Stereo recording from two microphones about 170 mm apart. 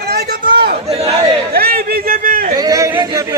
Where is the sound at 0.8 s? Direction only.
35° right (ahead or behind).